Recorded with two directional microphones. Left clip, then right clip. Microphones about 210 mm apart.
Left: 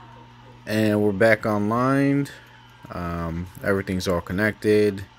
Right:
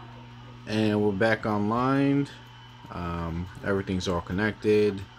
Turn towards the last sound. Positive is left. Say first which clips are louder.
# left 4 dB
turn(degrees=15)  # may be behind; listen again after turning